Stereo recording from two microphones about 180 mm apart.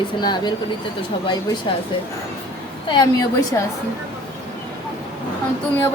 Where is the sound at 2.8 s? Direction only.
25° left (ahead or behind).